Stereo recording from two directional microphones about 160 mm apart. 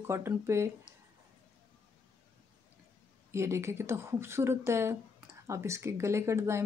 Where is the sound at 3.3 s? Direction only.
15° right (ahead or behind).